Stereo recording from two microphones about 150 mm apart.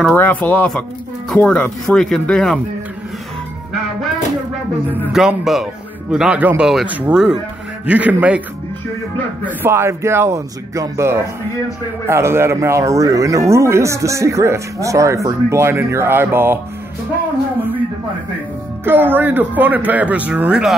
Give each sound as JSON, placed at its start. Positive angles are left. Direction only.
{"t": 0.1, "sound": "speech", "side_deg": 10}
{"t": 5.0, "sound": "speech", "side_deg": -5}
{"t": 9.6, "sound": "speech", "side_deg": -15}
{"t": 18.9, "sound": "speech", "side_deg": -15}